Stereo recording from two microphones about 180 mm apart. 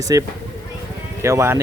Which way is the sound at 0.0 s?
20° right (ahead or behind).